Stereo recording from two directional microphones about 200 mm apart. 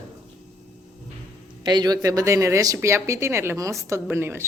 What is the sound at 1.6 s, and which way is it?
Speech, 20° right (ahead or behind).